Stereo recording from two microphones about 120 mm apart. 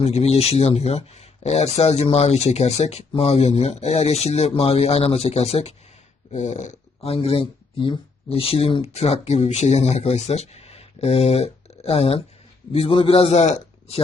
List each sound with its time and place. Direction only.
0.0 s speech: 60° left (ahead or behind)
6.3 s speech: 70° left (ahead or behind)
7.1 s speech: 55° left (ahead or behind); by 14.0 s 70° left (ahead or behind)